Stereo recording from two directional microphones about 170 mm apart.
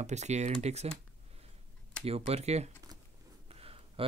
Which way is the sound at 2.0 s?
40° right (ahead or behind).